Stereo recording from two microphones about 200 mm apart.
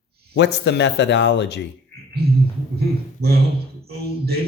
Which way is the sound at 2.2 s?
50° right (ahead or behind).